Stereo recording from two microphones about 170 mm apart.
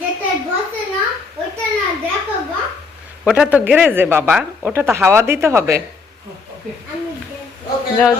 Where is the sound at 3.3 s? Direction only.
5° right (ahead or behind).